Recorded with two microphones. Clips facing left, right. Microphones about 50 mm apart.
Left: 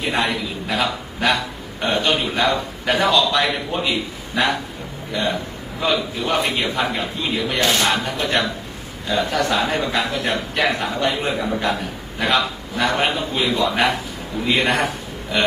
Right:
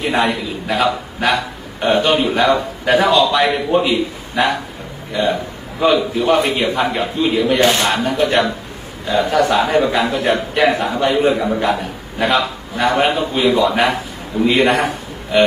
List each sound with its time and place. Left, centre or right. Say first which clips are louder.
0.0 s a man's voice: right 4 dB; centre
5.1 s a man's voice: right 5 dB; centre
7.6 s speech: right 1 dB; right
7.9 s a man's voice: right 5 dB; centre